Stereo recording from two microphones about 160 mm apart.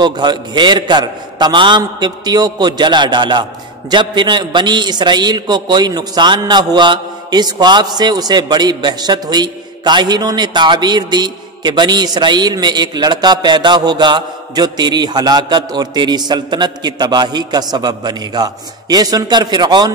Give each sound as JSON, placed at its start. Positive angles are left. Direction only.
{"t": 0.0, "sound": "a man's voice", "side_deg": -25}